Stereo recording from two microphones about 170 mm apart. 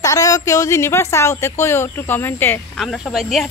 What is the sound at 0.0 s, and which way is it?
Speech, 20° left (ahead or behind).